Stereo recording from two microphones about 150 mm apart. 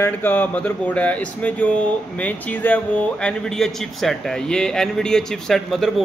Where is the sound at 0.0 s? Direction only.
15° left (ahead or behind).